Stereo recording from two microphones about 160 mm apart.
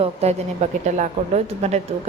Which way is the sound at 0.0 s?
40° right (ahead or behind).